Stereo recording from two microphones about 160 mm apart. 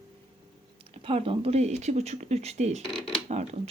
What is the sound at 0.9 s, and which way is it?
Speech, 35° right (ahead or behind).